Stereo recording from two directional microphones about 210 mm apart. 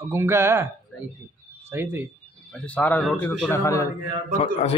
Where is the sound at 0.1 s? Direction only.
10° right (ahead or behind).